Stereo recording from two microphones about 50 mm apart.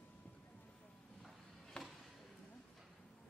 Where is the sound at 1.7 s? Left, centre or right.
Centre.